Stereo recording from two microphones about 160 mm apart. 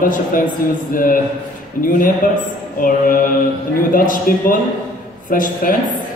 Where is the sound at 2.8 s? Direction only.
60° left (ahead or behind).